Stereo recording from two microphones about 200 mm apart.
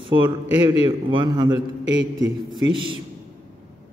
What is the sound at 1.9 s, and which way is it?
Speech, 65° right (ahead or behind).